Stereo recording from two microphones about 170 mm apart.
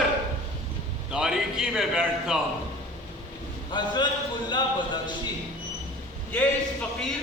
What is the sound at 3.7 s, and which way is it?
Speech, 25° left (ahead or behind).